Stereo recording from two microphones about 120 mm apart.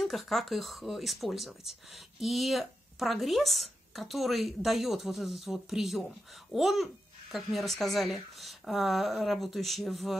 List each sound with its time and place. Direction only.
0.0 s speech: centre (ahead or behind)